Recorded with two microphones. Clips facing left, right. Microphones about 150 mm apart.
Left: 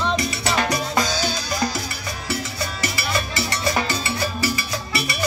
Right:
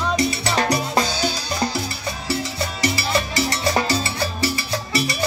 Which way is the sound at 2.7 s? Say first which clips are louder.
Right 5 dB; 35° right (ahead or behind).